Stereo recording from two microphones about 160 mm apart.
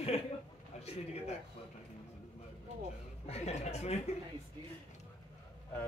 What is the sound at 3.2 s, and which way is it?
Speech, 40° left (ahead or behind).